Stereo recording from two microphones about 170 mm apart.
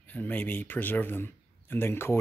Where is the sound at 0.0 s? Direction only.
10° left (ahead or behind).